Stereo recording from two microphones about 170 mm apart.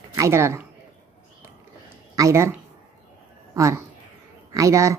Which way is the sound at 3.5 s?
15° right (ahead or behind).